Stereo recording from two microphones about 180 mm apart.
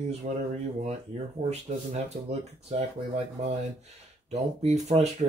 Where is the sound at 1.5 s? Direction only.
35° right (ahead or behind).